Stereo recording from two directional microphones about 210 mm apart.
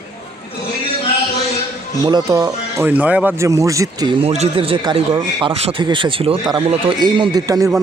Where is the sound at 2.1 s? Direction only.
20° right (ahead or behind).